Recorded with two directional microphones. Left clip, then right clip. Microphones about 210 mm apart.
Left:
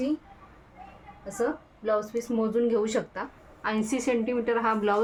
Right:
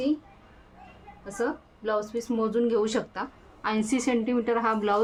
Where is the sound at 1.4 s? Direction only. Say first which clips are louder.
Left 1 dB; 10° right (ahead or behind).